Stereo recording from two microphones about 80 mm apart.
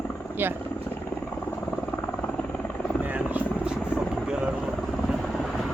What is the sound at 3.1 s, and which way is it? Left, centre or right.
Helicopter, centre.